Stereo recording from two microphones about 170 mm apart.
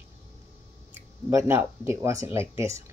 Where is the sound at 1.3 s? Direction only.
15° right (ahead or behind).